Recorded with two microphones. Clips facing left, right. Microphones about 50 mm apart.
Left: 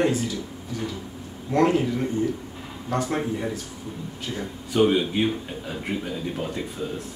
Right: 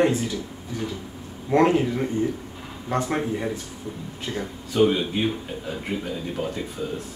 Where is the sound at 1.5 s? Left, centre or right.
Right.